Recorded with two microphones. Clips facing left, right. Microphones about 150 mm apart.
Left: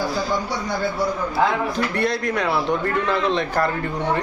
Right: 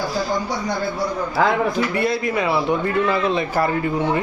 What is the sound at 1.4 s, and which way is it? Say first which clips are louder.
Speech: right 2 dB; 75° right (ahead or behind).